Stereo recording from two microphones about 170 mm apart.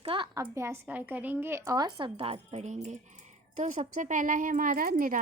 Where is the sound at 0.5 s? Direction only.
15° right (ahead or behind).